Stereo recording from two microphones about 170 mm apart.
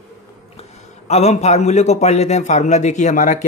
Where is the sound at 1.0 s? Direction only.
40° left (ahead or behind).